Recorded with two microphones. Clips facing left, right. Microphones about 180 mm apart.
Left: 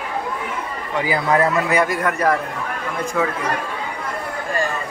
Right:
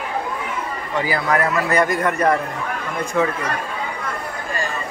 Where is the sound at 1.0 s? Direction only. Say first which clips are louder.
Left 2 dB; 20° left (ahead or behind).